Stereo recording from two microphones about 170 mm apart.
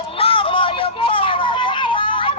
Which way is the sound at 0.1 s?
35° left (ahead or behind).